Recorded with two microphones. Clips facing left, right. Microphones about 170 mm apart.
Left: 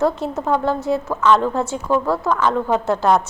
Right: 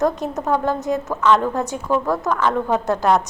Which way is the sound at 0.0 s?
20° right (ahead or behind).